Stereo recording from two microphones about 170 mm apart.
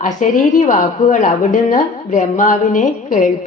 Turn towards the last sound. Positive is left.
turn(degrees=50)  # may be behind; listen again after turning